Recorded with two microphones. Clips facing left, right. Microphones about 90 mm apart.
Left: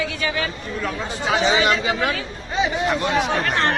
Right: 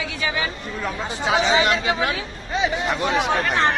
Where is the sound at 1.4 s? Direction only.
Centre (ahead or behind).